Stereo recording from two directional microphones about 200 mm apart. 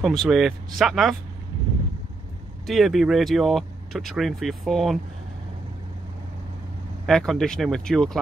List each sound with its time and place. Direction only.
0.0 s speech: centre (ahead or behind)
2.6 s speech: centre (ahead or behind)
7.1 s speech: centre (ahead or behind)